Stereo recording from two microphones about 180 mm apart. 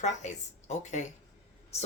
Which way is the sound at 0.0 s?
40° left (ahead or behind).